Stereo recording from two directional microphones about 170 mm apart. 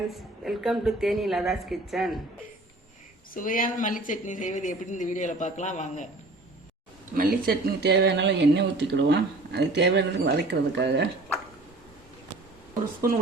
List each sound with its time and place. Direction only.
0.1 s a woman's voice: centre (ahead or behind)
3.3 s a woman's voice: 55° left (ahead or behind)
7.1 s speech: 60° right (ahead or behind); by 10.1 s 90° right
10.5 s speech: 80° right
12.8 s speech: 55° right (ahead or behind)